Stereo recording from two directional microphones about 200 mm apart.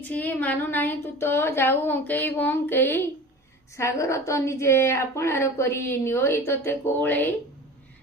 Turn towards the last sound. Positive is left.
turn(degrees=10)  # may be behind; listen again after turning